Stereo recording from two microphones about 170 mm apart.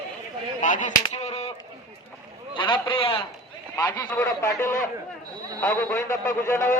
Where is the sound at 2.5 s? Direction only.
30° left (ahead or behind).